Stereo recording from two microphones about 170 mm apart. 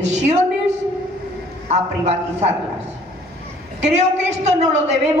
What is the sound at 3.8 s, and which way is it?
A woman's voice, 40° right (ahead or behind).